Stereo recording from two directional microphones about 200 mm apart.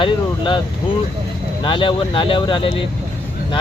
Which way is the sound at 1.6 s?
25° left (ahead or behind).